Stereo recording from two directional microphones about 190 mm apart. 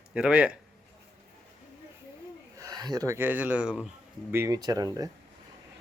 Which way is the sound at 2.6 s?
20° right (ahead or behind).